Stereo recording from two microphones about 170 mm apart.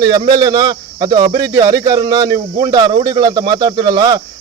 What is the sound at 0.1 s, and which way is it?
Speech, 25° right (ahead or behind).